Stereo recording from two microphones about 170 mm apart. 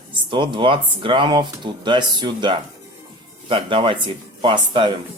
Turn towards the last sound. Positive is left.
turn(degrees=-30)  # may be behind; listen again after turning